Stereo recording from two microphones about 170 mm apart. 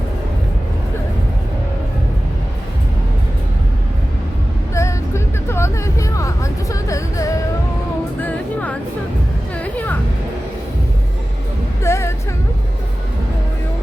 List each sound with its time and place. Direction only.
4.7 s music: 15° left (ahead or behind)
9.6 s a sound: 10° left (ahead or behind)
11.8 s music: 15° left (ahead or behind)